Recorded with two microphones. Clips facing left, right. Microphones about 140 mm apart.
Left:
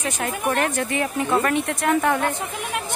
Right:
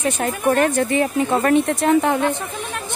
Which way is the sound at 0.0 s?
30° right (ahead or behind).